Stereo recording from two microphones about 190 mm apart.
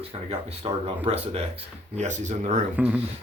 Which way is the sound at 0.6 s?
30° right (ahead or behind).